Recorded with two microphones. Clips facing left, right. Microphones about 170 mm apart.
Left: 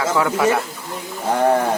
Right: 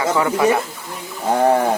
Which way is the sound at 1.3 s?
20° right (ahead or behind).